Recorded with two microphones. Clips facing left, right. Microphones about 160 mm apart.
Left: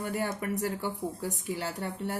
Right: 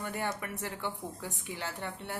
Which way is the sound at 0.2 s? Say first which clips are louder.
Left 6 dB; 40° left (ahead or behind).